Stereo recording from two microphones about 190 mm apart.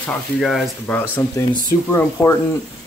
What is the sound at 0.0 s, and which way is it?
Speech, centre (ahead or behind).